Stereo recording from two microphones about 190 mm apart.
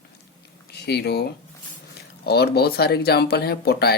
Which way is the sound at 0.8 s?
60° left (ahead or behind).